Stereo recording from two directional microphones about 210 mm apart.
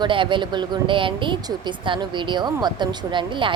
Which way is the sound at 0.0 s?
25° right (ahead or behind).